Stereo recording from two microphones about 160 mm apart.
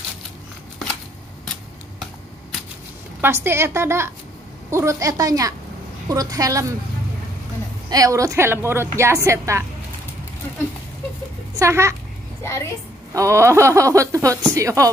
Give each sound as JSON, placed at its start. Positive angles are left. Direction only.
{"t": 3.2, "sound": "a woman's voice", "side_deg": -15}
{"t": 7.9, "sound": "a woman's voice", "side_deg": -20}
{"t": 11.5, "sound": "a woman's voice", "side_deg": -15}
{"t": 13.1, "sound": "speech", "side_deg": -20}